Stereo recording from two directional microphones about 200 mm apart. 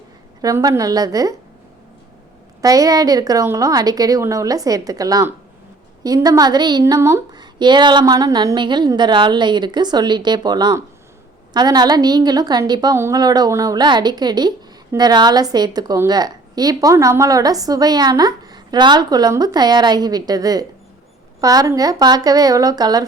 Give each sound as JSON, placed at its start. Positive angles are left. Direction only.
{"t": 0.4, "sound": "a woman's voice", "side_deg": -15}
{"t": 2.6, "sound": "a woman's voice", "side_deg": -15}